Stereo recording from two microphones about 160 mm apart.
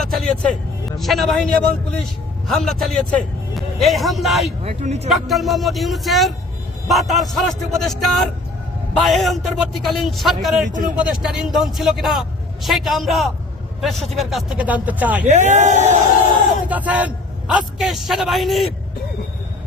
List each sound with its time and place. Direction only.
0.0 s vehicle: 5° left (ahead or behind)
0.9 s a man's voice: centre (ahead or behind)
4.6 s speech: 40° right (ahead or behind)
5.0 s a man's voice: centre (ahead or behind)
15.3 s speech: 50° right (ahead or behind)
16.6 s a man's voice: 10° right (ahead or behind)